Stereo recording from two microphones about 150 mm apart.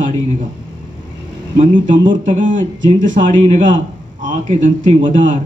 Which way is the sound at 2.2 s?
60° right (ahead or behind).